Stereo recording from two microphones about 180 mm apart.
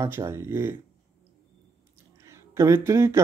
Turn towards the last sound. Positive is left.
turn(degrees=-15)  # may be behind; listen again after turning